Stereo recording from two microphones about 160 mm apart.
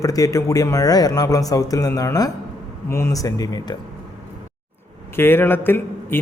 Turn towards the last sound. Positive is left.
turn(degrees=15)  # may be behind; listen again after turning